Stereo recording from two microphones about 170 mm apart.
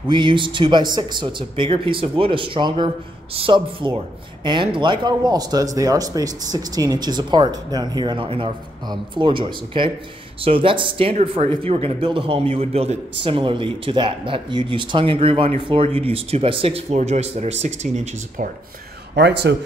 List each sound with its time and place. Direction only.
0.1 s speech: 30° right (ahead or behind)
19.1 s speech: 85° right